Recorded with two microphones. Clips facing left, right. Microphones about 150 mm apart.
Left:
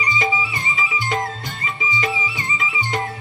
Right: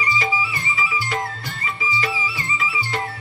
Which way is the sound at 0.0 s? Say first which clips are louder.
Left 1 dB; 20° left (ahead or behind).